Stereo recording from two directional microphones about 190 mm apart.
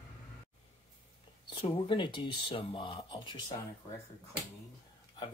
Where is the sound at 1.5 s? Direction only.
25° left (ahead or behind).